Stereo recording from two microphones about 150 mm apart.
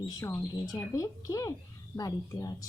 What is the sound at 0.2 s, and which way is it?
A woman's voice, 20° left (ahead or behind).